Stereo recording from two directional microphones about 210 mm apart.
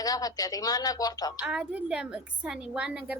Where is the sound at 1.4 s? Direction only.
5° right (ahead or behind).